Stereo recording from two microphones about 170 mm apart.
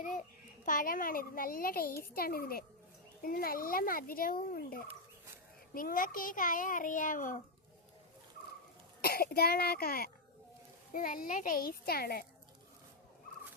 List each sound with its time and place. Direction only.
0.6 s a child's voice: 55° left (ahead or behind)
9.0 s a child's voice: 65° left (ahead or behind)